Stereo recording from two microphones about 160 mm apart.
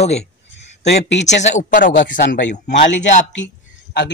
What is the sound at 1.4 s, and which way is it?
Speech, 50° left (ahead or behind).